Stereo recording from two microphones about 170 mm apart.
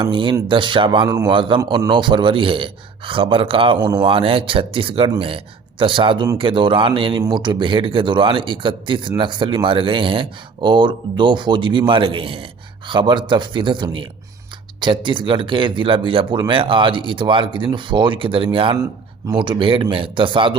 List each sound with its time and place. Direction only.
0.0 s a man's voice: 30° right (ahead or behind)